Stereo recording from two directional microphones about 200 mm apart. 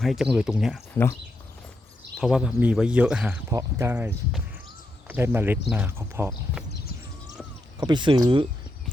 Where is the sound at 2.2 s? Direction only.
Centre (ahead or behind).